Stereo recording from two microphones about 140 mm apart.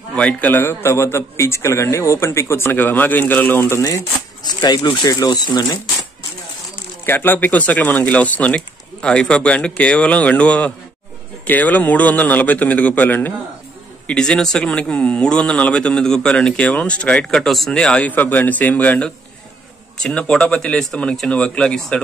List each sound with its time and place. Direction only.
0.1 s a man's voice: 10° left (ahead or behind); by 5.8 s 30° left (ahead or behind)
7.1 s speech: 15° left (ahead or behind)